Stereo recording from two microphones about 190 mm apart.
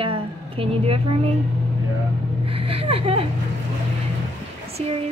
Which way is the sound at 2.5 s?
30° right (ahead or behind).